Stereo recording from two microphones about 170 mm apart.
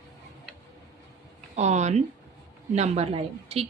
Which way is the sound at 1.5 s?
40° right (ahead or behind).